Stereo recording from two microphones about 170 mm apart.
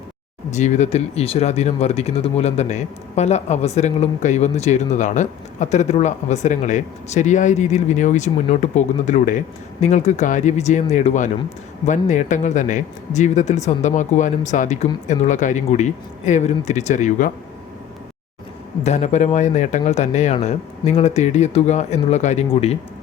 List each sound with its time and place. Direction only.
0.5 s speech: 45° left (ahead or behind)
18.8 s speech: 45° left (ahead or behind)